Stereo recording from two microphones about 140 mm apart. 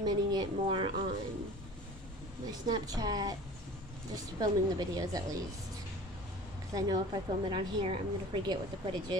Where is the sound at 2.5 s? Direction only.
30° right (ahead or behind).